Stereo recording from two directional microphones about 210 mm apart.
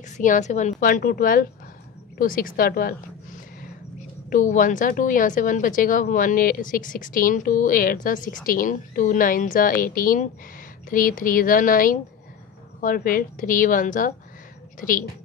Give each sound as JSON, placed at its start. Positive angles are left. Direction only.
{"t": 0.2, "sound": "a woman's voice", "side_deg": 35}
{"t": 4.3, "sound": "a woman's voice", "side_deg": 40}